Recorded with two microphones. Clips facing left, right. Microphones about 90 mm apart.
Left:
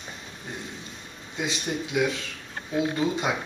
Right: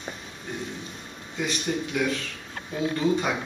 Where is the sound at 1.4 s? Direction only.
20° left (ahead or behind).